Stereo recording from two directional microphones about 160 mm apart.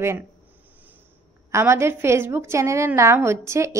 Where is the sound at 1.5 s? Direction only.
15° right (ahead or behind).